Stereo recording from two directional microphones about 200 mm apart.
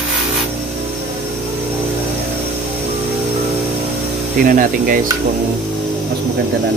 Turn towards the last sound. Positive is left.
turn(degrees=-45)  # may be behind; listen again after turning